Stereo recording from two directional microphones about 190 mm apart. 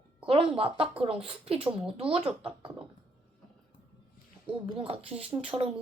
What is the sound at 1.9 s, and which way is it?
Speech, 30° right (ahead or behind).